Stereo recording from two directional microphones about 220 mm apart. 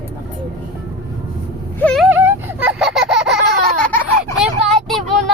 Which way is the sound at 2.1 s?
10° right (ahead or behind).